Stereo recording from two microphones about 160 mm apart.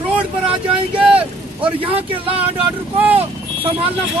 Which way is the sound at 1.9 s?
35° right (ahead or behind).